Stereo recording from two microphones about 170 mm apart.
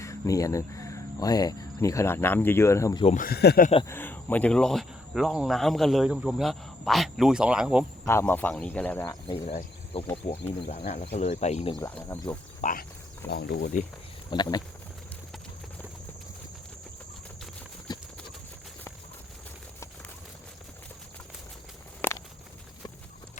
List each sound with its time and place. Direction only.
0.0 s speech: 20° left (ahead or behind)
3.2 s speech: 65° left (ahead or behind)
3.8 s speech: 10° left (ahead or behind); by 7.9 s 5° right (ahead or behind)
8.0 s speech: 15° left (ahead or behind)
9.9 s speech: 35° left (ahead or behind)
12.0 s speech: 20° left (ahead or behind)
12.6 s speech: 45° left (ahead or behind)
13.3 s speech: 75° left (ahead or behind)
14.3 s speech: 25° left (ahead or behind)
17.9 s clip-clop: 25° left (ahead or behind)
22.0 s walk: 10° left (ahead or behind)